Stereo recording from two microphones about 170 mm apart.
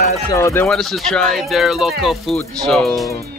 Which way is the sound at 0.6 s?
Centre (ahead or behind).